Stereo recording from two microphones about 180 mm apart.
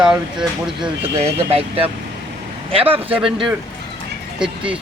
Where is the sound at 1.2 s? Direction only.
30° right (ahead or behind).